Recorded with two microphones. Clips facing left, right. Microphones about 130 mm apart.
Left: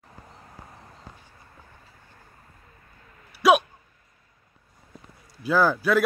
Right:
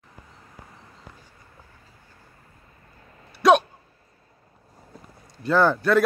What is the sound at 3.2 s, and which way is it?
Hiccup, 25° right (ahead or behind).